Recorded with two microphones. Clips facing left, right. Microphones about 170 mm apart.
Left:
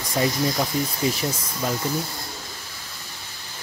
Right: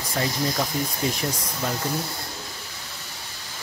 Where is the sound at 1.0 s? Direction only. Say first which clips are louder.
Left 3 dB; 5° left (ahead or behind).